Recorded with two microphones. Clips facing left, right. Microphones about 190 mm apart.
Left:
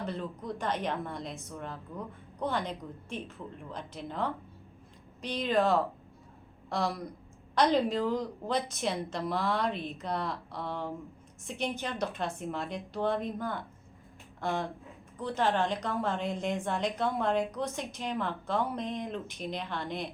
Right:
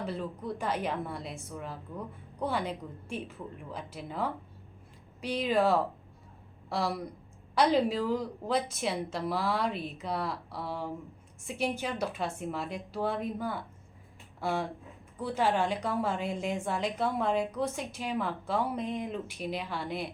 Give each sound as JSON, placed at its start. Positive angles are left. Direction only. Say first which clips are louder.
{"t": 0.0, "sound": "a woman's voice", "louder": "right 1 dB", "side_deg": -5}